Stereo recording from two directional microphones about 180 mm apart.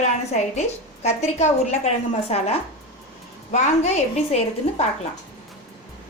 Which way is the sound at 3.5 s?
40° left (ahead or behind).